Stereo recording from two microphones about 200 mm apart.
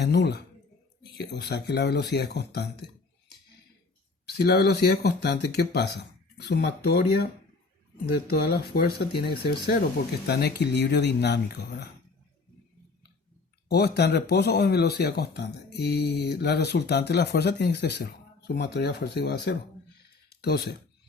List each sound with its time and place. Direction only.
0.0 s speech: 55° left (ahead or behind)
4.3 s speech: 55° left (ahead or behind)
13.7 s speech: 55° left (ahead or behind)